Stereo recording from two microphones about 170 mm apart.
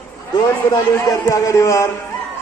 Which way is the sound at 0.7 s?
20° left (ahead or behind).